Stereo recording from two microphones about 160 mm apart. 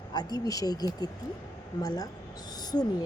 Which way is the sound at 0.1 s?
25° left (ahead or behind).